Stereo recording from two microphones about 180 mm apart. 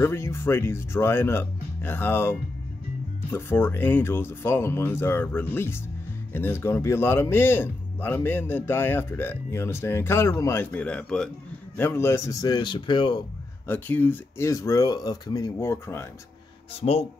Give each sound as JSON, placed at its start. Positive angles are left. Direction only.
{"t": 0.0, "sound": "speech", "side_deg": 15}
{"t": 13.7, "sound": "speech", "side_deg": 10}